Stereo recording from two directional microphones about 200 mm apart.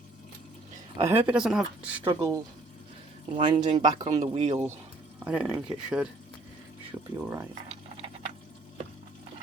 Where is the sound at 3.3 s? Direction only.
25° right (ahead or behind).